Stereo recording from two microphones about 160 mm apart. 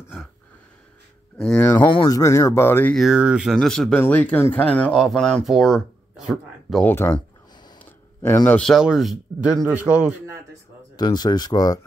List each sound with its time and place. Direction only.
1.9 s speech: 25° left (ahead or behind)
3.0 s speech: 5° right (ahead or behind)
6.9 s speech: 10° left (ahead or behind)
7.8 s a sound: 15° left (ahead or behind)
8.5 s speech: 5° left (ahead or behind)
11.0 s speech: 25° left (ahead or behind)